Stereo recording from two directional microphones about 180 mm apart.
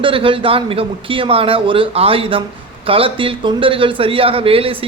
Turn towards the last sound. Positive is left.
turn(degrees=-30)  # may be behind; listen again after turning